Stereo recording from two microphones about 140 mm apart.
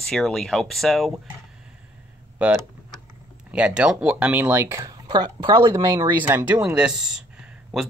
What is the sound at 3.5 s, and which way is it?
Speech, 10° right (ahead or behind).